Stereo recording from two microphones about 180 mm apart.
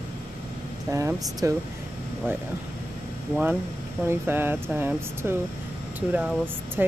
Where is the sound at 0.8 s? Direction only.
15° right (ahead or behind).